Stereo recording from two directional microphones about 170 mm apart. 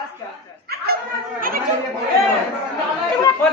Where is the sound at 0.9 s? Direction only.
65° right (ahead or behind).